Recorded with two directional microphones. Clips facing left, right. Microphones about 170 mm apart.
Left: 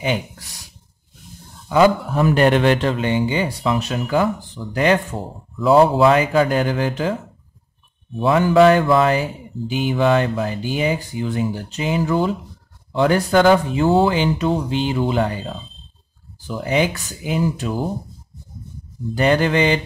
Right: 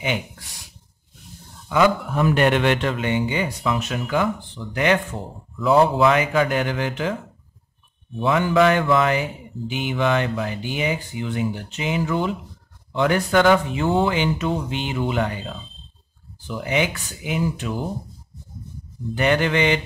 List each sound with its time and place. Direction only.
1.7 s speech: 35° left (ahead or behind)
8.2 s speech: 35° left (ahead or behind)
19.1 s speech: 35° left (ahead or behind)